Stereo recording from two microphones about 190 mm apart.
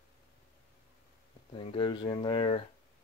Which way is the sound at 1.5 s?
25° left (ahead or behind).